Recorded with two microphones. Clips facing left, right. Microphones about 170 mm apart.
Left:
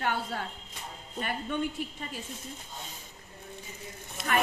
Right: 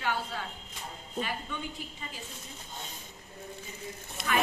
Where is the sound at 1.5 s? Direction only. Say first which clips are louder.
Left 8 dB; 60° left (ahead or behind).